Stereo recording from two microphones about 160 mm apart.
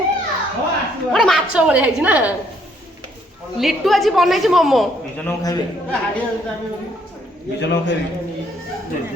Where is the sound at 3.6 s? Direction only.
Centre (ahead or behind).